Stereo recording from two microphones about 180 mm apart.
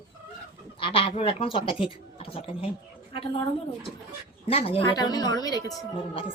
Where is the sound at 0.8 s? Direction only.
30° left (ahead or behind).